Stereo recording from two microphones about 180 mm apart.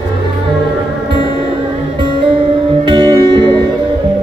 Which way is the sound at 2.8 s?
25° right (ahead or behind).